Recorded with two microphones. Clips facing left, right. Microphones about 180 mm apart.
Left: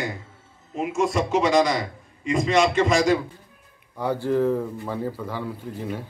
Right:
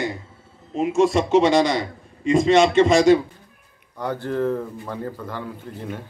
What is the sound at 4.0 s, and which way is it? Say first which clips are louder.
Speech: left 2 dB; 10° left (ahead or behind).